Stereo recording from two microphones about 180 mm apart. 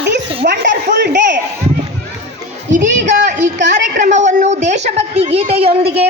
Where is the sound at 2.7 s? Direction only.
45° right (ahead or behind).